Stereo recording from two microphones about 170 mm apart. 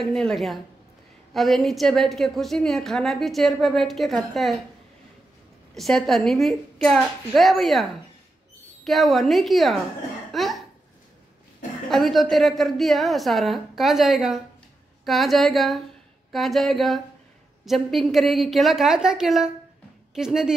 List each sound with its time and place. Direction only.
0.0 s a woman's voice: 5° left (ahead or behind)
5.8 s a woman's voice: centre (ahead or behind)
8.8 s a woman's voice: centre (ahead or behind)
10.3 s cough: centre (ahead or behind)
11.9 s a woman's voice: centre (ahead or behind)